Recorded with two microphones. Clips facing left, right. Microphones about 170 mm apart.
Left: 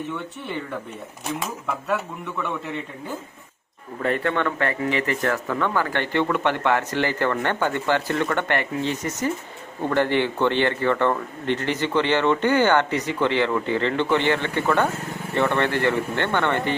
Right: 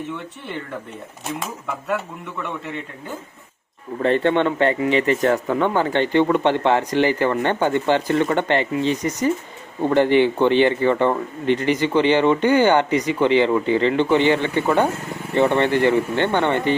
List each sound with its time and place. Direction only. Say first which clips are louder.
4.0 s speech: right 5 dB; 25° right (ahead or behind)